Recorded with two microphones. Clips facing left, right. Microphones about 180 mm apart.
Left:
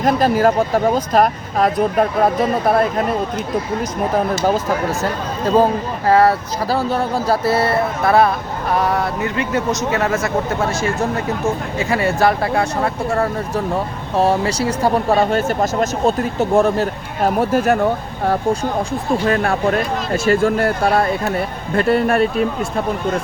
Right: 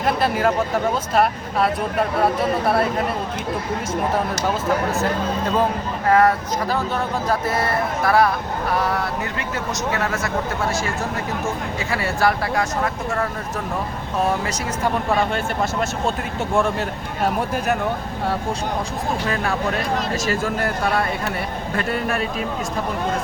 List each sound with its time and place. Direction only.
0.0 s speech: 35° left (ahead or behind)
6.1 s speech: 30° left (ahead or behind)
11.9 s speech: 20° left (ahead or behind); by 17.8 s 40° left (ahead or behind)
19.3 s speech: 50° left (ahead or behind)
20.8 s speech: 30° left (ahead or behind)
21.8 s speech: 40° left (ahead or behind)